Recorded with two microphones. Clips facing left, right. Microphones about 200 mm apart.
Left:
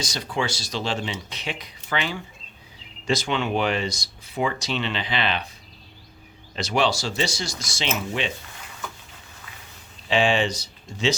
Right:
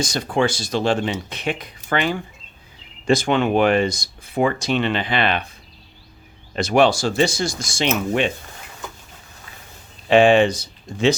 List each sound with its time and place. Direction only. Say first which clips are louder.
0.0 s speech: right 7 dB; 50° right (ahead or behind)
6.6 s speech: right 7 dB; 55° right (ahead or behind)
10.1 s speech: right 8 dB; 55° right (ahead or behind)